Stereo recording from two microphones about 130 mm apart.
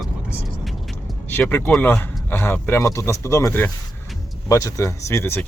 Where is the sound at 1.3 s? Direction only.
15° left (ahead or behind).